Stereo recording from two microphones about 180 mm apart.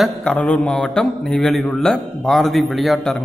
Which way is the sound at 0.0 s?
5° left (ahead or behind).